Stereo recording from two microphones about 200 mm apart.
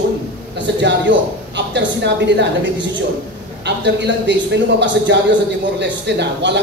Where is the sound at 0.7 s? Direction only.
60° right (ahead or behind).